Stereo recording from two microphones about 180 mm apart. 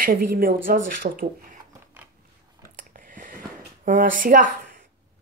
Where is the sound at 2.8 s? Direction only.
50° right (ahead or behind).